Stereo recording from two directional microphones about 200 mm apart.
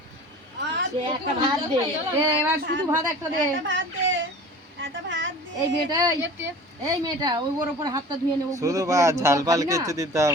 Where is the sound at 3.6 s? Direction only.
70° right (ahead or behind).